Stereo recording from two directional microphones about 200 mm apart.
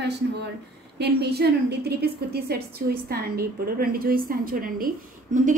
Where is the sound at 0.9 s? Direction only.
55° right (ahead or behind).